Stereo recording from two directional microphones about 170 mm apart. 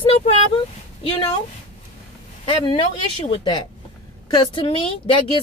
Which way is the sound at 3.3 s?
25° left (ahead or behind).